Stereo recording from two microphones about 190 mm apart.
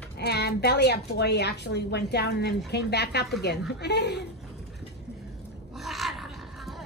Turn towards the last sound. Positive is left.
turn(degrees=0)  # may be behind; listen again after turning